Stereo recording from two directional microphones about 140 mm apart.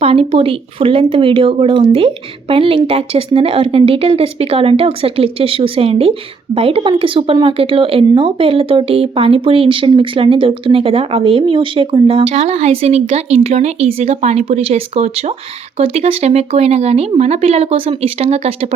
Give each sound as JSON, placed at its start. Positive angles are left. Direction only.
{"t": 0.0, "sound": "speech", "side_deg": -45}